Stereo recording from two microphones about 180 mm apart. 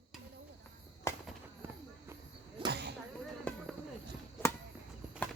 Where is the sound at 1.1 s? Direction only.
15° left (ahead or behind).